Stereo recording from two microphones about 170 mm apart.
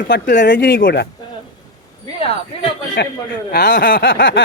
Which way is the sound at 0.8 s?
60° left (ahead or behind).